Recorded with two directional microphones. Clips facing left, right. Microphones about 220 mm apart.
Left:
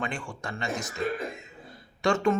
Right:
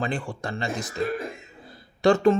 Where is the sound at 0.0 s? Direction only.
35° right (ahead or behind).